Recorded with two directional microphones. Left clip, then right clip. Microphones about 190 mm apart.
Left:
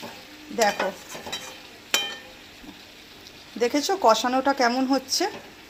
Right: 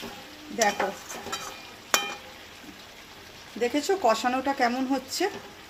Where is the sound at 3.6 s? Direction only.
10° left (ahead or behind).